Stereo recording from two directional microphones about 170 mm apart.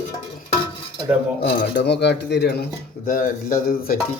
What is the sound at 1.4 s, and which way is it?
Speech, 85° left.